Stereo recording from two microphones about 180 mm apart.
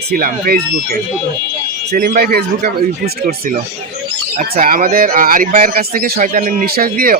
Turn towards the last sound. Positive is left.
turn(degrees=-55)  # may be behind; listen again after turning